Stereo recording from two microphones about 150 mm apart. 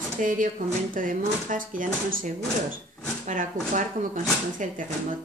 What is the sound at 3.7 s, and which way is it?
A woman's voice, 60° right (ahead or behind).